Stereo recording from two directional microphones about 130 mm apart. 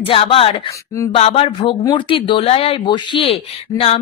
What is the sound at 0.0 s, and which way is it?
A woman's voice, 45° left (ahead or behind).